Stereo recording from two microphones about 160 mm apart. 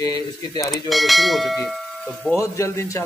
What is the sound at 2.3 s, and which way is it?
Speech, 20° left (ahead or behind).